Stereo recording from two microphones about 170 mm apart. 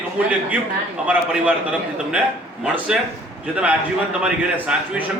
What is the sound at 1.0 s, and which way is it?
Speech, 10° right (ahead or behind).